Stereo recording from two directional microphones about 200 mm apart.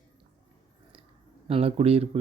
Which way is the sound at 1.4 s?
30° right (ahead or behind).